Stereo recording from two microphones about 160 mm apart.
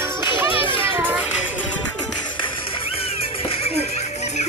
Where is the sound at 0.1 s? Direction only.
15° right (ahead or behind).